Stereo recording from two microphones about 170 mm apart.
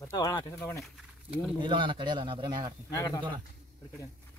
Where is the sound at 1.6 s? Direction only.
30° right (ahead or behind).